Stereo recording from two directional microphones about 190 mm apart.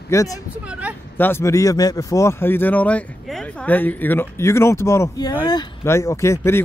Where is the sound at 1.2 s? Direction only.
10° left (ahead or behind).